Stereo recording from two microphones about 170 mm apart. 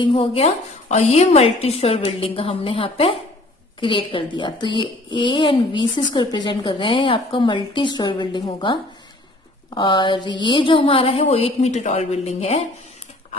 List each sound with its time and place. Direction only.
0.0 s a woman's voice: 30° left (ahead or behind)